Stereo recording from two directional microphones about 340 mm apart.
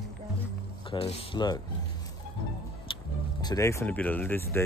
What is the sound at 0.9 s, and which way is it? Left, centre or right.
Speech, centre.